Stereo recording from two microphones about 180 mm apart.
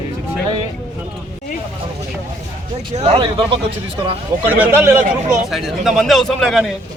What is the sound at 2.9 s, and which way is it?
Speech, 35° right (ahead or behind).